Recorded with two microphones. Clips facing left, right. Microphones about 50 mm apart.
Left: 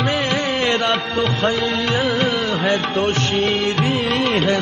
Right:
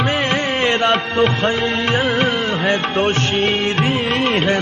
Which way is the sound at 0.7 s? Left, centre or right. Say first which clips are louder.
Right 3 dB; right.